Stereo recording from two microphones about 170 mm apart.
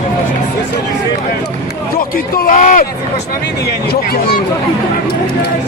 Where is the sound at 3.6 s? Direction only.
65° left (ahead or behind).